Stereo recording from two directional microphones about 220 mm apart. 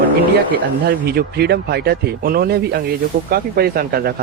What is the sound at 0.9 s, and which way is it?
Speech, 45° right (ahead or behind).